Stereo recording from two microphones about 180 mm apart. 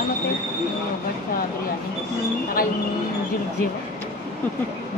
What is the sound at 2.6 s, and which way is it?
Speech, 55° left (ahead or behind).